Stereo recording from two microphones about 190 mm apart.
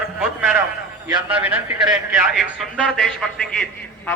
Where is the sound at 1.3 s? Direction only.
5° right (ahead or behind).